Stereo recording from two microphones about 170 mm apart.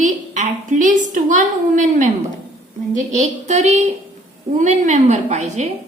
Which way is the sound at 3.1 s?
45° right (ahead or behind).